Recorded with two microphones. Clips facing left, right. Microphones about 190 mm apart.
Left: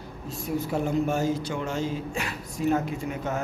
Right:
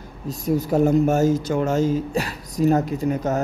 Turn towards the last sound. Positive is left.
turn(degrees=-40)  # may be behind; listen again after turning